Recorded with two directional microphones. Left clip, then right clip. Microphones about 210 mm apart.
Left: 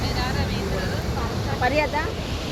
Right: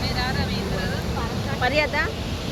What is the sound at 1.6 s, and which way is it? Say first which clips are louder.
Vehicle: right 1 dB; 25° left (ahead or behind).